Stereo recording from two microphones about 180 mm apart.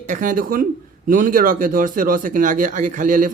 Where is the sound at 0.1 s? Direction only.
50° right (ahead or behind).